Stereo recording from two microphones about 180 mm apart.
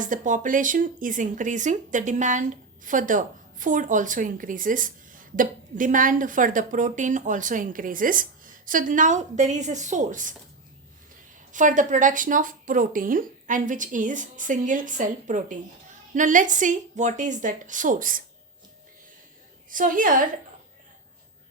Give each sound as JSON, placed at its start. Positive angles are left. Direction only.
{"t": 0.0, "sound": "speech", "side_deg": -45}
{"t": 11.5, "sound": "speech", "side_deg": -45}
{"t": 19.7, "sound": "speech", "side_deg": -50}